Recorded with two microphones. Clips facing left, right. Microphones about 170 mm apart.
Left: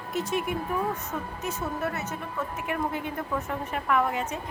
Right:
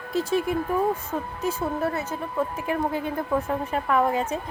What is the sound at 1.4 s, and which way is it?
Speech, 30° right (ahead or behind).